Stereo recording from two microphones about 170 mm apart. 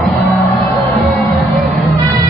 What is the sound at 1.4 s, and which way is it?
Music, centre (ahead or behind).